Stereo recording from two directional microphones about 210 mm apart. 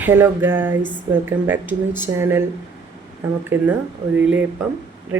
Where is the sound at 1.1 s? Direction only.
10° right (ahead or behind).